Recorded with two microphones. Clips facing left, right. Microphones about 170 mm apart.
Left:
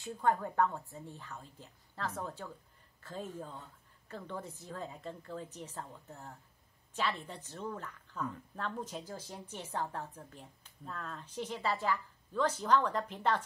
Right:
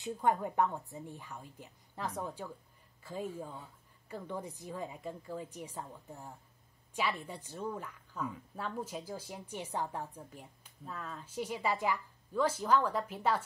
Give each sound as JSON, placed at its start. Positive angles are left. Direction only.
{"t": 0.0, "sound": "speech", "side_deg": -15}